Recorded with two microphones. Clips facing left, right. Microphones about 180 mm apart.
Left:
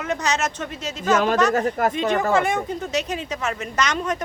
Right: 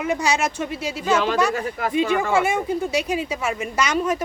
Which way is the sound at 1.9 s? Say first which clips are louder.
Right 1 dB; 10° right (ahead or behind).